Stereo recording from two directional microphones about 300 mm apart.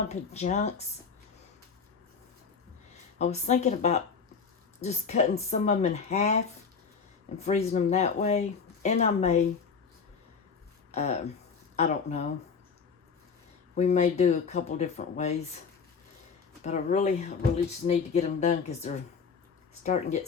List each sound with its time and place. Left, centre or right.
0.1 s speech: left
3.2 s speech: left
10.9 s speech: left
13.7 s speech: left
16.6 s speech: left